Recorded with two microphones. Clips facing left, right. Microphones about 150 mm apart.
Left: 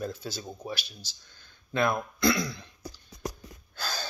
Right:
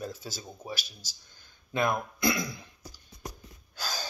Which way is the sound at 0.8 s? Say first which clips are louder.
Left 1 dB; 40° right (ahead or behind).